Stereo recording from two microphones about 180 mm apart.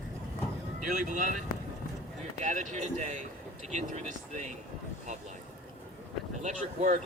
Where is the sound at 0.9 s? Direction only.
45° right (ahead or behind).